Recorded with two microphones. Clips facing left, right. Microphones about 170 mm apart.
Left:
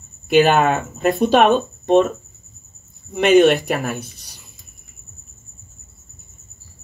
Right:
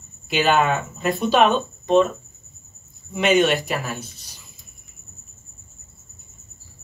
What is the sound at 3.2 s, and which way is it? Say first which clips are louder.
Speech: left 6 dB; 55° left (ahead or behind).